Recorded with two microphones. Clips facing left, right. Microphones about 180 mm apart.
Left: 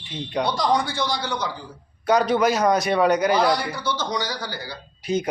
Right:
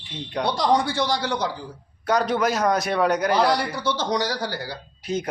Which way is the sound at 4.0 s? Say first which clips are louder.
Right 3 dB; 35° right (ahead or behind).